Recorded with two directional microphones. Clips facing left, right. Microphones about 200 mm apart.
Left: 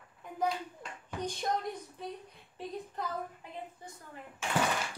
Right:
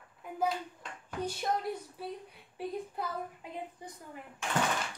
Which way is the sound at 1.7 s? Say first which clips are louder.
Right 2 dB; 5° right (ahead or behind).